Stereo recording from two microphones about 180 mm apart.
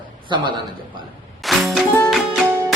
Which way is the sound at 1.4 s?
Centre (ahead or behind).